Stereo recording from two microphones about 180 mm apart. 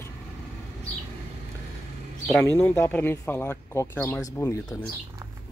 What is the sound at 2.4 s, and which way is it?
Speech, 10° left (ahead or behind).